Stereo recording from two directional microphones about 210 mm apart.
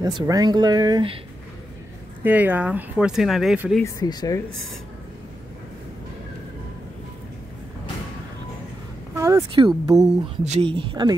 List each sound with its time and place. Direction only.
0.0 s speech: 20° right (ahead or behind)
2.2 s speech: 10° right (ahead or behind)
3.8 s speech: 20° left (ahead or behind)
9.1 s a sound: 15° right (ahead or behind)
9.9 s speech: 30° right (ahead or behind)